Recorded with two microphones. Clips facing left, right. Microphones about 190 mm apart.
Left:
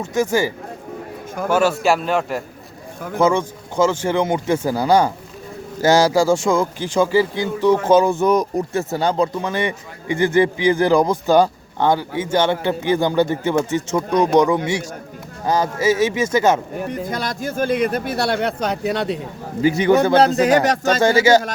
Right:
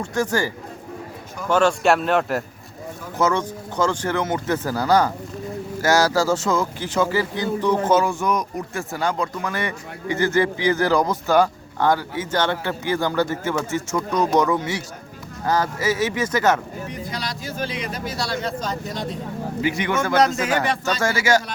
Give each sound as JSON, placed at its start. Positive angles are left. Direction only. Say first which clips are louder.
{"t": 0.0, "sound": "a man's voice", "louder": "left 4 dB", "side_deg": 10}
{"t": 3.8, "sound": "speech", "louder": "left 4 dB", "side_deg": 20}
{"t": 15.8, "sound": "speech", "louder": "left 5 dB", "side_deg": 25}
{"t": 16.2, "sound": "speech", "louder": "left 2 dB", "side_deg": 10}
{"t": 16.8, "sound": "speech", "louder": "left 6 dB", "side_deg": 50}
{"t": 19.6, "sound": "a man's voice", "louder": "left 9 dB", "side_deg": 35}
{"t": 21.0, "sound": "speech", "louder": "left 7 dB", "side_deg": 20}